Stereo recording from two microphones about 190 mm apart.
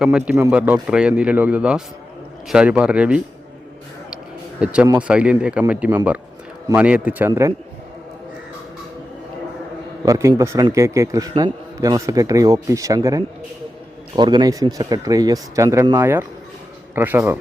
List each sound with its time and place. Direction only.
0.0 s a man's voice: 5° right (ahead or behind)
4.6 s a man's voice: 5° right (ahead or behind)
10.1 s a man's voice: 15° right (ahead or behind)